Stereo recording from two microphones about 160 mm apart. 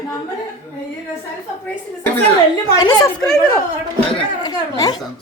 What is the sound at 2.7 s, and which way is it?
Speech, 25° left (ahead or behind).